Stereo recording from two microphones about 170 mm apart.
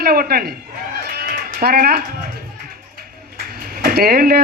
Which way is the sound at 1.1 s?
65° right (ahead or behind).